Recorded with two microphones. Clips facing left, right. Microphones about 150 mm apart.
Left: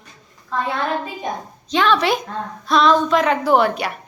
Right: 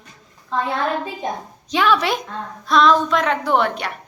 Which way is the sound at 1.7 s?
10° right (ahead or behind).